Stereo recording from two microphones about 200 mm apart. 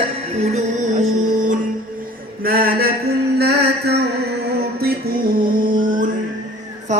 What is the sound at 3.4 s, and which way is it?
Music, 55° right (ahead or behind).